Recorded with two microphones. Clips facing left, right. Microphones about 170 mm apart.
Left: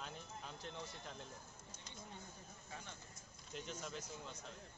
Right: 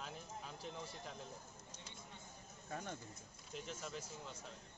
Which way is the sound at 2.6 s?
50° right (ahead or behind).